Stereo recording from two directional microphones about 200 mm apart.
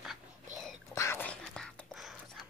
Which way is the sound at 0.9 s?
15° left (ahead or behind).